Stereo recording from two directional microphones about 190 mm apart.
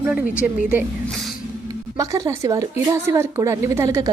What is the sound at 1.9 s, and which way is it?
A woman's voice, 15° right (ahead or behind).